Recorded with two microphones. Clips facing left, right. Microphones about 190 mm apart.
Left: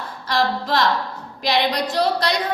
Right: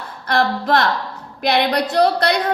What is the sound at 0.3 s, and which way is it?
A woman's voice, 55° right (ahead or behind).